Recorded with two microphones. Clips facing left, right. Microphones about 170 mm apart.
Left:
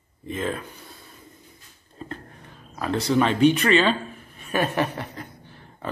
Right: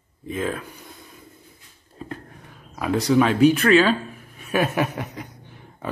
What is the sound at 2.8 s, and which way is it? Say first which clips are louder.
Speech: right 3 dB; 10° right (ahead or behind).